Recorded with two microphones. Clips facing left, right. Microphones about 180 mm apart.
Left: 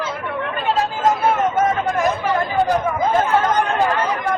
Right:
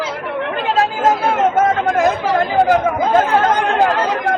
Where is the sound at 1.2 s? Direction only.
90° right.